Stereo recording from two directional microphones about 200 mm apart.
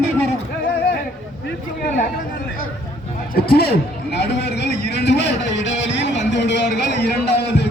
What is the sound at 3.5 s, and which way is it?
Speech, 50° left (ahead or behind).